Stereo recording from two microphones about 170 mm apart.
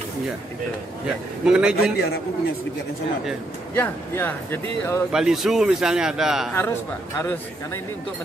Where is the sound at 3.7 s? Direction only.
10° left (ahead or behind).